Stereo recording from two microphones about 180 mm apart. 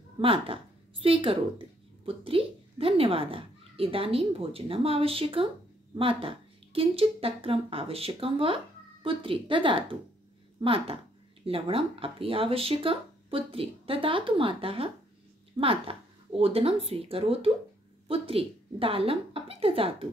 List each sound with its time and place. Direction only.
0.2 s a woman's voice: 30° right (ahead or behind)